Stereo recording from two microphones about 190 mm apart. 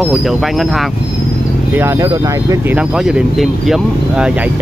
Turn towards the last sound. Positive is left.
turn(degrees=-5)  # may be behind; listen again after turning